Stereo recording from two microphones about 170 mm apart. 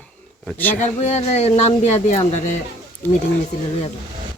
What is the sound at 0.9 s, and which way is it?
Speech, 40° left (ahead or behind).